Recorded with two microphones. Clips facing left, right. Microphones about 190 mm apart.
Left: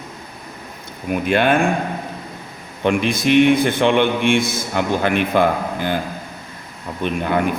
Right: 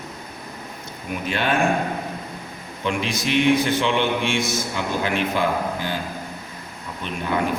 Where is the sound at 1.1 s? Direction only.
55° left (ahead or behind).